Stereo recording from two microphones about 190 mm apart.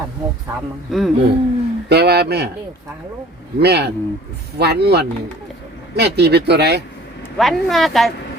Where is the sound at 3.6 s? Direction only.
60° right (ahead or behind).